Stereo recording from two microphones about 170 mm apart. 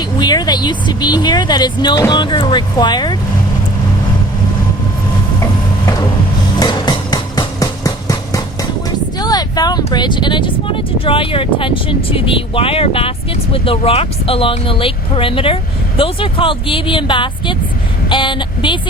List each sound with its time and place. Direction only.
0.2 s speech: 25° left (ahead or behind)
6.6 s music: 25° left (ahead or behind)
9.1 s speech: 25° left (ahead or behind)